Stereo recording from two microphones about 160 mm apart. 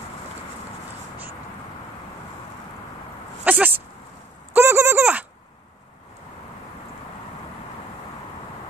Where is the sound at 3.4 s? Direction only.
10° right (ahead or behind).